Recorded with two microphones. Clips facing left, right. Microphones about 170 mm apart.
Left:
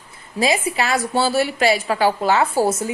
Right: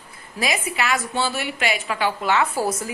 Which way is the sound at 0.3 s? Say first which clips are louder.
Left 5 dB; 30° left (ahead or behind).